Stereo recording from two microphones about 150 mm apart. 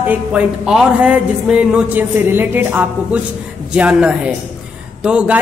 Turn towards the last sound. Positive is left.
turn(degrees=-5)  # may be behind; listen again after turning